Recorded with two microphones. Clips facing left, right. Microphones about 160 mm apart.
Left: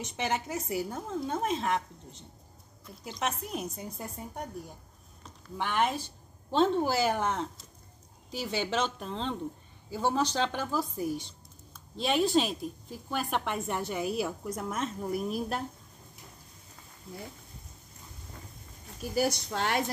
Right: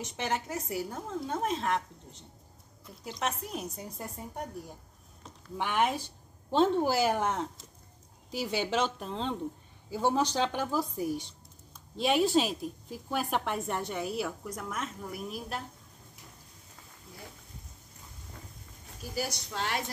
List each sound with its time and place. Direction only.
0.2 s speech: 5° left (ahead or behind)
3.0 s speech: centre (ahead or behind)
5.6 s speech: 10° right (ahead or behind)
14.0 s a woman's voice: 20° left (ahead or behind); by 15.6 s 40° left (ahead or behind)
19.1 s a woman's voice: 50° left (ahead or behind)